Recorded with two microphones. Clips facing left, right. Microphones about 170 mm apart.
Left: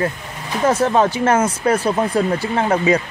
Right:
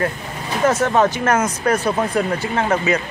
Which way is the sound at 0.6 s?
30° left (ahead or behind).